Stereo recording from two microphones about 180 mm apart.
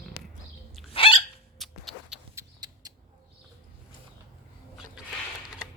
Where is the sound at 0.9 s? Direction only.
30° left (ahead or behind).